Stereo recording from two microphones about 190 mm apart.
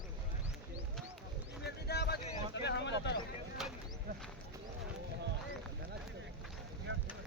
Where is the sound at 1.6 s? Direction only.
60° left (ahead or behind).